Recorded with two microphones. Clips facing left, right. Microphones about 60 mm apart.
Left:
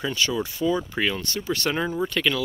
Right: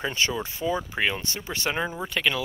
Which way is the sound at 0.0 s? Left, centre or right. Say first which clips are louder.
Left 2 dB; right.